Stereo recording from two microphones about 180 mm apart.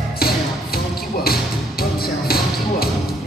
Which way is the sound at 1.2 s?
55° left (ahead or behind).